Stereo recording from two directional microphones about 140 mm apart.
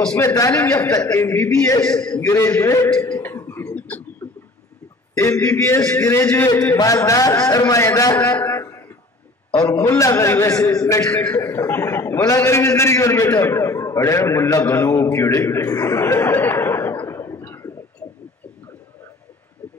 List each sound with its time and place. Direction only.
0.2 s a man's voice: 20° left (ahead or behind)
0.9 s a man's voice: 25° left (ahead or behind)
1.8 s a man's voice: 5° left (ahead or behind)
2.2 s a man's voice: 20° left (ahead or behind)
2.9 s a sound: 10° left (ahead or behind)
4.2 s a sound: 30° left (ahead or behind)
5.3 s a man's voice: 10° left (ahead or behind)
8.2 s a sound: 15° left (ahead or behind)
9.8 s a man's voice: 20° left (ahead or behind)
11.1 s a man's voice: 10° left (ahead or behind)